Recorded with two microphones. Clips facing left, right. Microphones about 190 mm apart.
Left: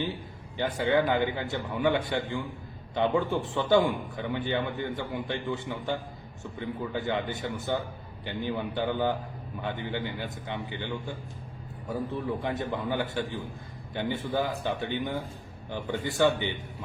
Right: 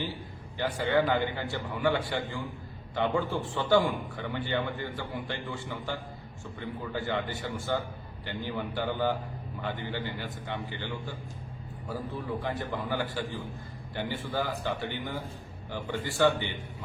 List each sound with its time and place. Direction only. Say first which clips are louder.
0.8 s a man's voice: left 2 dB; 20° left (ahead or behind)
12.1 s a man's voice: left 1 dB; 20° left (ahead or behind)